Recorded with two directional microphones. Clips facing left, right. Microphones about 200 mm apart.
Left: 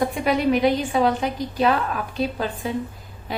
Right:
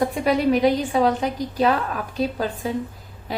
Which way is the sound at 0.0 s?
35° right (ahead or behind).